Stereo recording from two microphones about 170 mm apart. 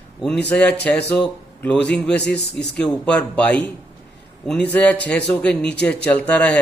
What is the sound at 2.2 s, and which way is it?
Speech, 85° left.